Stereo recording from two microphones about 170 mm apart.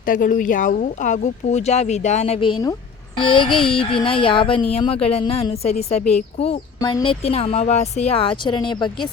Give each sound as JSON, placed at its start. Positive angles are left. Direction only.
{"t": 0.0, "sound": "speech", "side_deg": 55}
{"t": 3.2, "sound": "a sound", "side_deg": 30}
{"t": 3.7, "sound": "speech", "side_deg": 30}
{"t": 6.7, "sound": "speech", "side_deg": 25}